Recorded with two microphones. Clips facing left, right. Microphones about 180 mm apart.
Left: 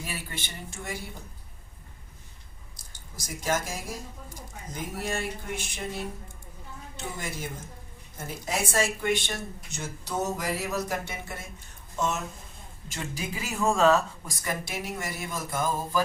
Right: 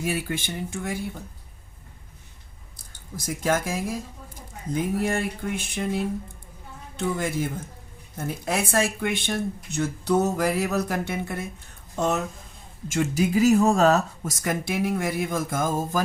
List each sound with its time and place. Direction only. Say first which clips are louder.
0.0 s speech: right 10 dB; 50° right (ahead or behind)
2.9 s speech: right 8 dB; 55° right (ahead or behind)
4.7 s a sound: right 8 dB; 55° right (ahead or behind)
7.0 s a sound: right 10 dB; 60° right (ahead or behind)
13.1 s speech: right 15 dB; 40° right (ahead or behind)
14.4 s speech: right 8 dB; 55° right (ahead or behind)